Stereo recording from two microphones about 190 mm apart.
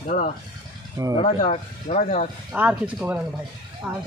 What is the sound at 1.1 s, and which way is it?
Speech, 35° left (ahead or behind).